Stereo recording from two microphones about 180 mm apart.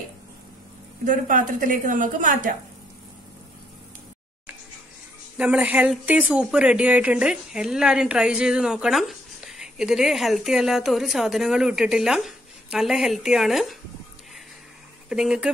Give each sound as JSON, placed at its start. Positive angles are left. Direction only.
{"t": 1.0, "sound": "a woman's voice", "side_deg": -45}
{"t": 5.4, "sound": "speech", "side_deg": -5}
{"t": 15.0, "sound": "speech", "side_deg": -5}